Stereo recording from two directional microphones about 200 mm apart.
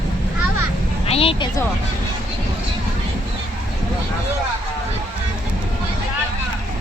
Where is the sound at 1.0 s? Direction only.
30° left (ahead or behind).